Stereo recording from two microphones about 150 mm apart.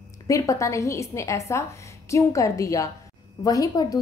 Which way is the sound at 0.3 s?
20° left (ahead or behind).